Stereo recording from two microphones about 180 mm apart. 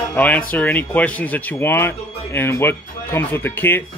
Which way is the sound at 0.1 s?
10° left (ahead or behind).